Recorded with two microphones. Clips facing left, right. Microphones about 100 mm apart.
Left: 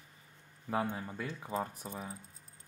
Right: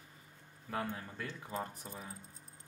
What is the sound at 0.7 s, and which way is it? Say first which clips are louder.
Speech: left 5 dB; 20° left (ahead or behind).